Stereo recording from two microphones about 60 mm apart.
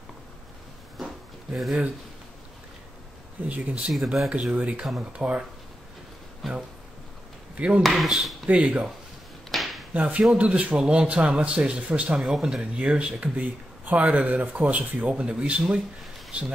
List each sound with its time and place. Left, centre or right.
0.9 s a sound: centre
3.4 s speech: right
3.9 s speech: centre
4.3 s speech: right
6.4 s speech: centre
7.5 s speech: right
7.8 s speech: centre
8.5 s speech: centre
9.5 s a sound: centre
9.9 s speech: right